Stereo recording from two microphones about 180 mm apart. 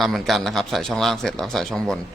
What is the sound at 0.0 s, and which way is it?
A man's voice, centre (ahead or behind).